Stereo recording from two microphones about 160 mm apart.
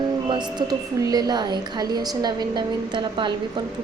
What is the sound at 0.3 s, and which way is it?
A woman's voice, 25° right (ahead or behind).